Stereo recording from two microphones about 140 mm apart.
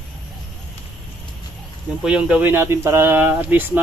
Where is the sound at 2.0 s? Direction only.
5° right (ahead or behind).